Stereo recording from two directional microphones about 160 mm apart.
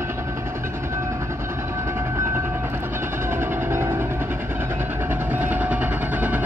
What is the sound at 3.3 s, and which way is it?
Train, 15° right (ahead or behind).